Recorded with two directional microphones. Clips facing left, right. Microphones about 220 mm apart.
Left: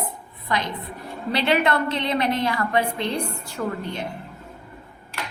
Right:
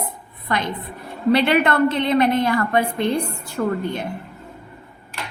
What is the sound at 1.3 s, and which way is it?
A woman's voice, 55° right (ahead or behind).